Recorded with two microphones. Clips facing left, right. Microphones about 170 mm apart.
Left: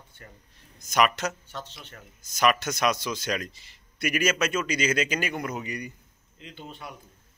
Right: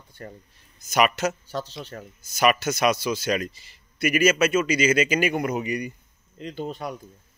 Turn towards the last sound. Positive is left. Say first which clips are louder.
# right 10 dB
turn(degrees=-40)  # may be behind; listen again after turning